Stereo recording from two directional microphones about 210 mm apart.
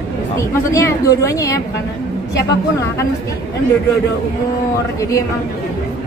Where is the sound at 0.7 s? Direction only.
15° left (ahead or behind).